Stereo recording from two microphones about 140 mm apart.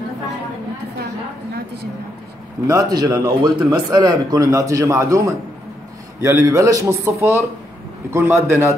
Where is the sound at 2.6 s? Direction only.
25° right (ahead or behind).